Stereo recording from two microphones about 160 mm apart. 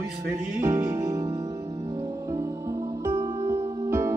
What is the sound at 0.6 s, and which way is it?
Music, 25° right (ahead or behind).